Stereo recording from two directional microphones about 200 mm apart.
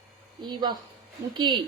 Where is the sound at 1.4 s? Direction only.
25° right (ahead or behind).